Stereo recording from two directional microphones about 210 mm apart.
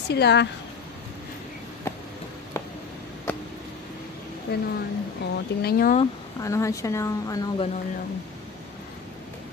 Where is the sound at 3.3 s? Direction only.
10° left (ahead or behind).